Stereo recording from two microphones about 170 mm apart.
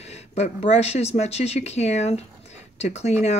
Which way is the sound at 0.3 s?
40° left (ahead or behind).